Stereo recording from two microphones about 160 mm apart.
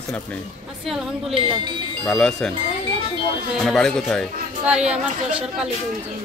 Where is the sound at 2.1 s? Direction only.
5° left (ahead or behind).